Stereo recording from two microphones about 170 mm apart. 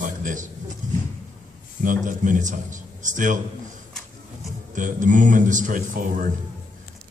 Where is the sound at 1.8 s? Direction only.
50° right (ahead or behind).